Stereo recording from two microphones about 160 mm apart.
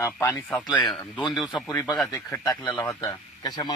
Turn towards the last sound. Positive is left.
turn(degrees=25)  # may be behind; listen again after turning